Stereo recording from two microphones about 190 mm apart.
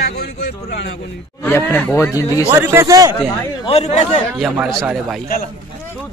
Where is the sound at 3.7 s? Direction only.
35° left (ahead or behind).